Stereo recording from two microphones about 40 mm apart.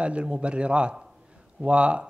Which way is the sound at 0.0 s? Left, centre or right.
Right.